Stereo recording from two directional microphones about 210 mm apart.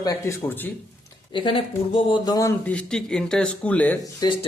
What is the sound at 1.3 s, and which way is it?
Speech, 25° left (ahead or behind).